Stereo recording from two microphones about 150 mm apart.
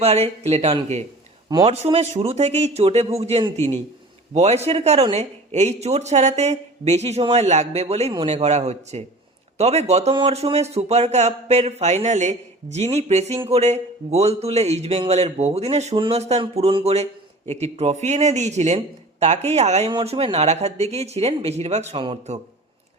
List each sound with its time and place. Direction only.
0.0 s speech: 45° right (ahead or behind)
21.9 s a man's voice: 35° right (ahead or behind)